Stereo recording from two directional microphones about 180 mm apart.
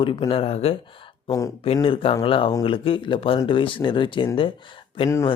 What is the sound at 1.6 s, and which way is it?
Speech, 30° left (ahead or behind).